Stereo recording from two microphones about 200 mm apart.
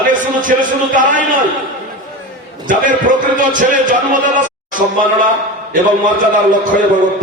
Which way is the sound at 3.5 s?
40° right (ahead or behind).